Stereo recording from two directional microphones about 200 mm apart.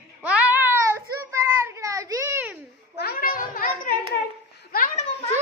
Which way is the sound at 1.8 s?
15° right (ahead or behind).